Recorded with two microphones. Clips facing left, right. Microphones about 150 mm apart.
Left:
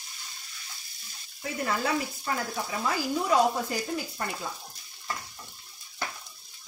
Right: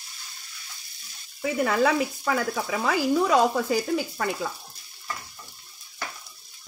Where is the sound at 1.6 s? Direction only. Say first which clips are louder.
Right 6 dB; 90° right.